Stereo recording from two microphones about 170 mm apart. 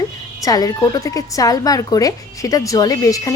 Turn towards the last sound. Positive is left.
turn(degrees=20)  # may be behind; listen again after turning